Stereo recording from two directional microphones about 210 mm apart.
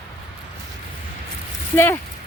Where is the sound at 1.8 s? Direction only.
10° left (ahead or behind).